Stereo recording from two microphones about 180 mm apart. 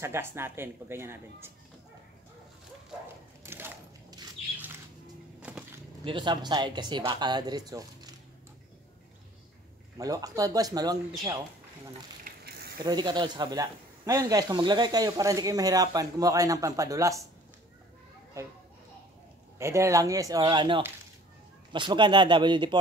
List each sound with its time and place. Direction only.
0.0 s speech: 15° right (ahead or behind)
3.4 s a sound: 15° right (ahead or behind)
5.5 s a sound: 10° right (ahead or behind)
6.0 s a man's voice: 25° right (ahead or behind)
9.9 s a man's voice: 20° right (ahead or behind)
12.3 s snake: 55° right (ahead or behind)
12.8 s a man's voice: 25° right (ahead or behind)
18.4 s speech: 15° right (ahead or behind)
19.6 s a man's voice: 15° right (ahead or behind)